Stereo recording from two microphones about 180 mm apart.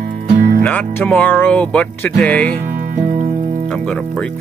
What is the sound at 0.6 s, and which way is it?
Speech, 10° left (ahead or behind).